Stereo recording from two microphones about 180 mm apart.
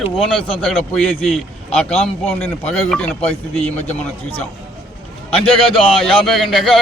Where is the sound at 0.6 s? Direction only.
Centre (ahead or behind).